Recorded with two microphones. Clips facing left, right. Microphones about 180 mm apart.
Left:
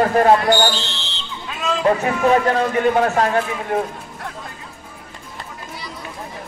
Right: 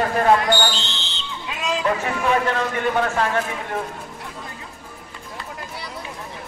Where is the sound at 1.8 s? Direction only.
40° left (ahead or behind).